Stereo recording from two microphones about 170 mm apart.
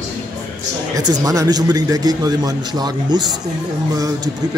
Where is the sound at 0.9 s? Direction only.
20° right (ahead or behind).